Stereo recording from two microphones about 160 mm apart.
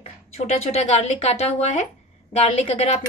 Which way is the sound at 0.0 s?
40° left (ahead or behind).